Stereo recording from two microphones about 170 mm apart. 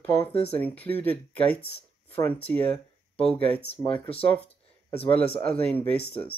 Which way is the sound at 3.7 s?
10° left (ahead or behind).